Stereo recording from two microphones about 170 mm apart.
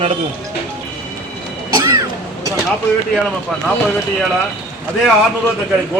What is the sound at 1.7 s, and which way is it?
Music, 20° right (ahead or behind).